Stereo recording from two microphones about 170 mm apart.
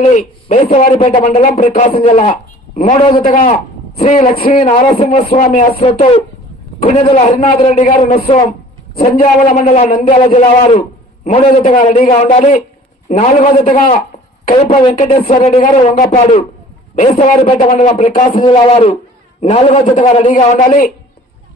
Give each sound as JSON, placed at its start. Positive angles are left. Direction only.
{"t": 0.1, "sound": "a man's voice", "side_deg": 45}
{"t": 3.3, "sound": "a man's voice", "side_deg": 55}
{"t": 3.9, "sound": "a man's voice", "side_deg": 40}
{"t": 5.3, "sound": "a man's voice", "side_deg": 50}
{"t": 5.8, "sound": "a man's voice", "side_deg": 35}
{"t": 8.2, "sound": "a man's voice", "side_deg": 35}
{"t": 9.1, "sound": "a man's voice", "side_deg": 55}
{"t": 18.4, "sound": "a man's voice", "side_deg": 25}
{"t": 19.8, "sound": "a man's voice", "side_deg": 45}